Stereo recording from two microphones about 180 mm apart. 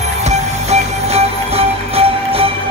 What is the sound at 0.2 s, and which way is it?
Music, 40° right (ahead or behind).